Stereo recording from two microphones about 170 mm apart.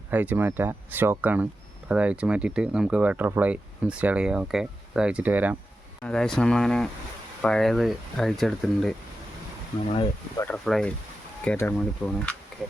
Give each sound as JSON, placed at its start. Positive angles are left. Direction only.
{"t": 0.1, "sound": "speech", "side_deg": -10}
{"t": 6.0, "sound": "speech", "side_deg": 5}
{"t": 9.8, "sound": "speech", "side_deg": 30}
{"t": 10.3, "sound": "speech", "side_deg": 15}
{"t": 10.7, "sound": "speech", "side_deg": 0}